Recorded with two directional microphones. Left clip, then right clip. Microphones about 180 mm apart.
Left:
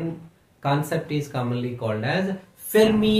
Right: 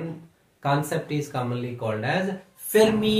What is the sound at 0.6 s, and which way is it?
Speech, 25° left (ahead or behind).